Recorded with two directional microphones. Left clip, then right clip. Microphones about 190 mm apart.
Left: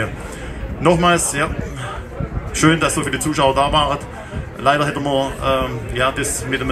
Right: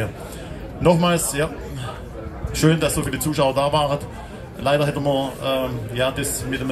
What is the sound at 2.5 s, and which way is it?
A man's voice, 40° right (ahead or behind).